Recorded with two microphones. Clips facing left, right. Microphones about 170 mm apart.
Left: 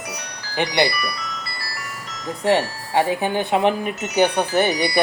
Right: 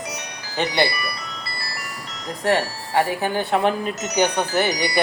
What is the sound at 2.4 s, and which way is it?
Speech, 20° left (ahead or behind).